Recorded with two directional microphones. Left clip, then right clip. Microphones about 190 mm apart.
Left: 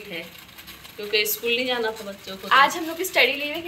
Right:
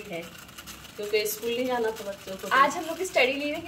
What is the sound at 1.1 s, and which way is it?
Speech, 35° right (ahead or behind).